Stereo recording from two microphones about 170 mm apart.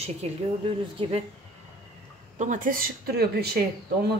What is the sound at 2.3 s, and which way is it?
Speech, 45° right (ahead or behind).